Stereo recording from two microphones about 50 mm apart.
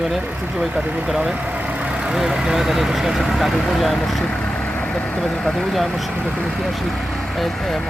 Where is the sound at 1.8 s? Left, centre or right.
Centre.